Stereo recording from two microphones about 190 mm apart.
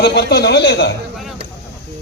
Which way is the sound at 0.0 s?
55° left (ahead or behind).